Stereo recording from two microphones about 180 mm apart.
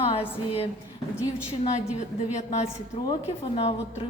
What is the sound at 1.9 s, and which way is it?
A woman's voice, 40° left (ahead or behind).